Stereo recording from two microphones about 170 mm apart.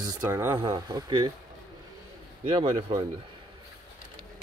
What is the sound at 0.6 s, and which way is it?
Speech, 30° right (ahead or behind).